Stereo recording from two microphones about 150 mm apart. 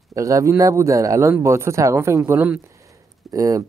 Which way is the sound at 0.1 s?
20° right (ahead or behind).